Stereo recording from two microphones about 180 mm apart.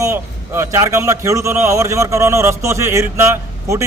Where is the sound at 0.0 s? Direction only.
15° right (ahead or behind).